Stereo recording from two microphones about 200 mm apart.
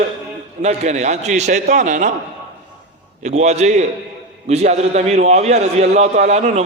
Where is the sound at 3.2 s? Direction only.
35° right (ahead or behind).